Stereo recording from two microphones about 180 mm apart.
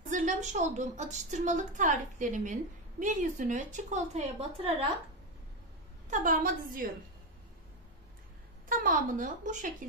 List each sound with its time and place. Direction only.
0.1 s a woman's voice: 40° right (ahead or behind)
6.0 s a woman's voice: 45° right (ahead or behind)
8.6 s a woman's voice: 50° right (ahead or behind)